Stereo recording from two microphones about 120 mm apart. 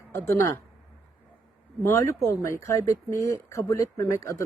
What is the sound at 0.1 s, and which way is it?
Speech, 20° left (ahead or behind).